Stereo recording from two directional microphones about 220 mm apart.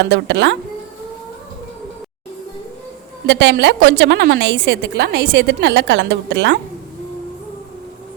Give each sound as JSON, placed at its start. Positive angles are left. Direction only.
{"t": 0.0, "sound": "a woman's voice", "side_deg": -50}
{"t": 3.2, "sound": "a woman's voice", "side_deg": -50}